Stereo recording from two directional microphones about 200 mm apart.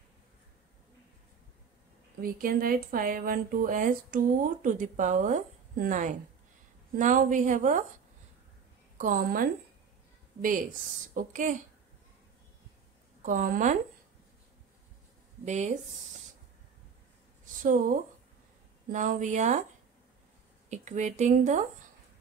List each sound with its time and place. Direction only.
2.2 s a woman's voice: 45° right (ahead or behind)
8.9 s a woman's voice: 40° right (ahead or behind)
11.1 s a woman's voice: 40° right (ahead or behind)
13.2 s a woman's voice: 40° right (ahead or behind)
15.4 s a woman's voice: 35° right (ahead or behind)
17.6 s a woman's voice: 40° right (ahead or behind)
20.7 s a woman's voice: 35° right (ahead or behind)